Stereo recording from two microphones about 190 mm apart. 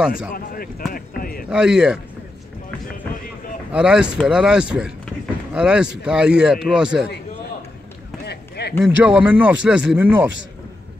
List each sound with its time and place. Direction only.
0.3 s speech: 50° left (ahead or behind)
1.5 s speech: 5° right (ahead or behind)
3.7 s speech: 5° right (ahead or behind)
8.3 s a sound: 60° left (ahead or behind)
8.8 s speech: 10° right (ahead or behind)